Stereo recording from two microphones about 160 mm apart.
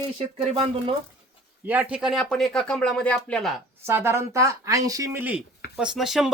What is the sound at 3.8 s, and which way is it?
Speech, 15° right (ahead or behind).